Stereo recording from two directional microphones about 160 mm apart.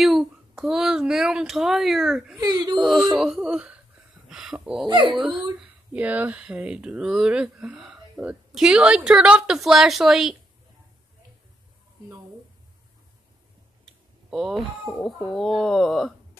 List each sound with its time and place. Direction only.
0.0 s a child's voice: centre (ahead or behind)
2.3 s speech: 25° right (ahead or behind)
2.8 s speech: centre (ahead or behind)
4.8 s speech: 30° right (ahead or behind)
5.1 s speech: 5° right (ahead or behind)
13.8 s a sound: centre (ahead or behind)
14.9 s speech: 10° left (ahead or behind)